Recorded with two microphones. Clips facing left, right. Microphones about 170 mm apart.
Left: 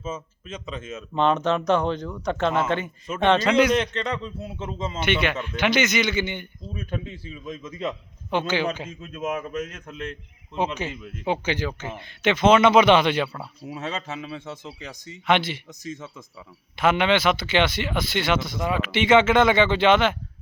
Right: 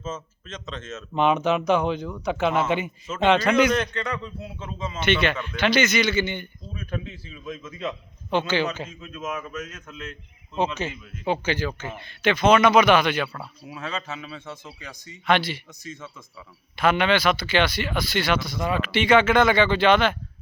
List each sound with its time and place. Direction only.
0.0 s speech: 10° left (ahead or behind)
1.1 s speech: 5° right (ahead or behind)
3.7 s speech: 25° left (ahead or behind)
10.8 s speech: 15° left (ahead or behind)